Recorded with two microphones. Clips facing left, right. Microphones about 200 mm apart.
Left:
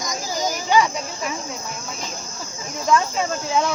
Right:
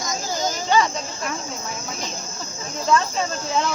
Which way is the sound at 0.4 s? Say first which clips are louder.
Left 1 dB; 10° left (ahead or behind).